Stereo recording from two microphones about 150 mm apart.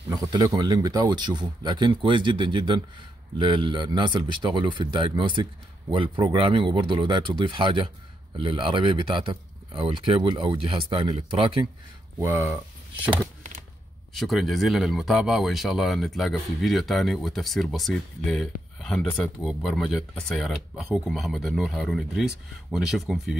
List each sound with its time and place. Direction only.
0.3 s speech: 30° right (ahead or behind)
12.5 s speech: 10° right (ahead or behind)
14.1 s speech: centre (ahead or behind)